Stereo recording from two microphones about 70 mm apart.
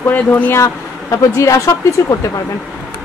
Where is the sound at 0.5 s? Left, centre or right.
Left.